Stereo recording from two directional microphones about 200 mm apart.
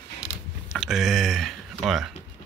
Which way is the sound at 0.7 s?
Centre (ahead or behind).